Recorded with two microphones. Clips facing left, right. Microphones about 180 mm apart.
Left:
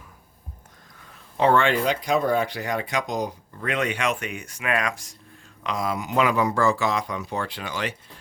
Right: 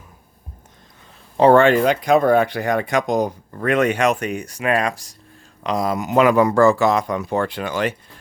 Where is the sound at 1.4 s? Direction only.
40° right (ahead or behind).